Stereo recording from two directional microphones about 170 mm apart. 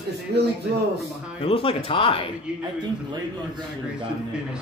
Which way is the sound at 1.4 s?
35° left (ahead or behind).